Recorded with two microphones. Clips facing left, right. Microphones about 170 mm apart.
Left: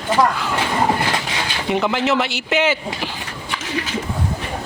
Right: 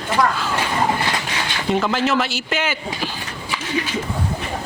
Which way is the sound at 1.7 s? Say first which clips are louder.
Left 1 dB; 15° left (ahead or behind).